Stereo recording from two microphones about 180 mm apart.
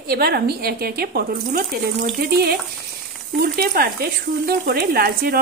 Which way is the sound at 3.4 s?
60° right (ahead or behind).